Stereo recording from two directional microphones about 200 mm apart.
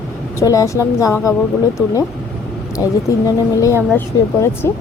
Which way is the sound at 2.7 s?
15° left (ahead or behind).